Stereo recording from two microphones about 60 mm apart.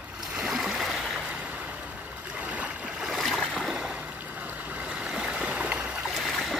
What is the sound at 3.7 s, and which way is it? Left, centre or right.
Boat, centre.